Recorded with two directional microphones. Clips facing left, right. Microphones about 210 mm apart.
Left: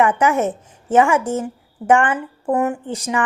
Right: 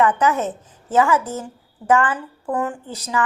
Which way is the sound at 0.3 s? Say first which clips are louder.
Left 5 dB; 25° left (ahead or behind).